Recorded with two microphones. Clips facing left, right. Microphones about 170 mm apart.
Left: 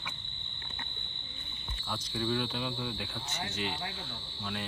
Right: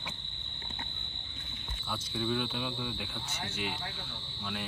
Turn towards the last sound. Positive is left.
turn(degrees=0)  # may be behind; listen again after turning